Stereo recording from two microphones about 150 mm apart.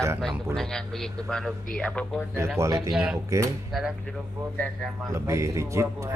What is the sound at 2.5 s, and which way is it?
Speech, 20° right (ahead or behind).